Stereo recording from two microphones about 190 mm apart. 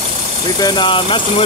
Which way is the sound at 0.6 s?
20° left (ahead or behind).